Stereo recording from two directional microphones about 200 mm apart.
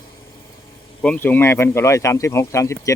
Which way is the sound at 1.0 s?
10° left (ahead or behind).